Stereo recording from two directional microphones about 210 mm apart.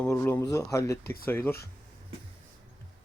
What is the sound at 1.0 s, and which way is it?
Speech, 45° left (ahead or behind).